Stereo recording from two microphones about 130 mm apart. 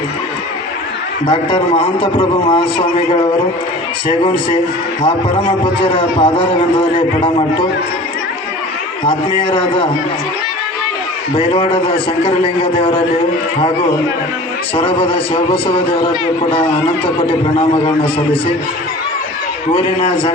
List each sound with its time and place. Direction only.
1.3 s a man's voice: 40° left (ahead or behind)
9.4 s a man's voice: 40° left (ahead or behind)
11.5 s a man's voice: 40° left (ahead or behind)
14.8 s a man's voice: 40° left (ahead or behind)
17.2 s a man's voice: 40° left (ahead or behind)